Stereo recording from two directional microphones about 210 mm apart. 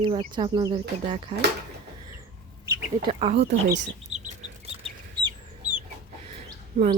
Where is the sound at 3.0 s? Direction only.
30° right (ahead or behind).